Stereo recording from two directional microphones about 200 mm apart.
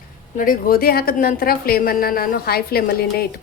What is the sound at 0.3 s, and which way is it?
A woman's voice, 45° left (ahead or behind).